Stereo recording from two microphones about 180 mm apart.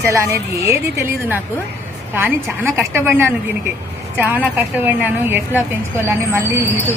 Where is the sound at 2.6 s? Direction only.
15° right (ahead or behind).